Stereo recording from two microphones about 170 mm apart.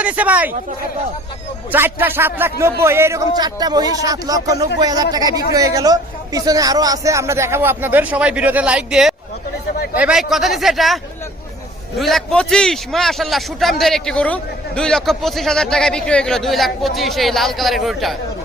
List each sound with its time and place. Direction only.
0.0 s a man's voice: 10° right (ahead or behind)
1.7 s a man's voice: 10° right (ahead or behind)